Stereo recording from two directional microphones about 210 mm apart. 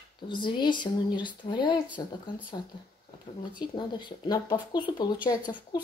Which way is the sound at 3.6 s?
20° left (ahead or behind).